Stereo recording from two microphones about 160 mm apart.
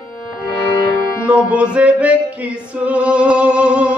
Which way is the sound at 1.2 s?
5° right (ahead or behind).